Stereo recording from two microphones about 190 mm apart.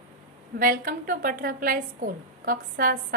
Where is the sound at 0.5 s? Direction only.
45° right (ahead or behind).